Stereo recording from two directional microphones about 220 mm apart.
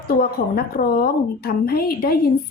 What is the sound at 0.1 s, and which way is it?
A woman's voice, 45° left (ahead or behind).